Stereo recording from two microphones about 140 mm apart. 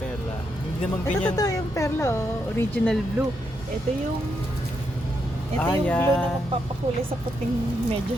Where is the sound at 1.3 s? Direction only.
25° left (ahead or behind).